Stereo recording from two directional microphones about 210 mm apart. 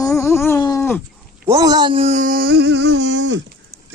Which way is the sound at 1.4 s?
15° right (ahead or behind).